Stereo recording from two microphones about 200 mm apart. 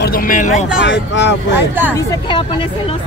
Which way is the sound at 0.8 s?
60° left (ahead or behind).